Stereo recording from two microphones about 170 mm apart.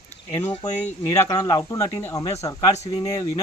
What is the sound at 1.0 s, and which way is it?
Speech, 20° left (ahead or behind).